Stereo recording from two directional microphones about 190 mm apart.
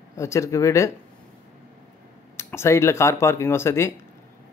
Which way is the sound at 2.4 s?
15° left (ahead or behind).